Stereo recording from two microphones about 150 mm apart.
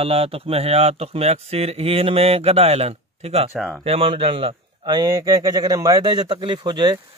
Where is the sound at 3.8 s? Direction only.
40° right (ahead or behind).